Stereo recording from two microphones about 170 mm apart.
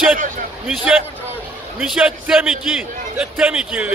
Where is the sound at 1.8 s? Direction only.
5° right (ahead or behind).